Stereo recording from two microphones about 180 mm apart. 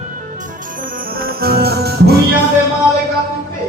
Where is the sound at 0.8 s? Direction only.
50° right (ahead or behind).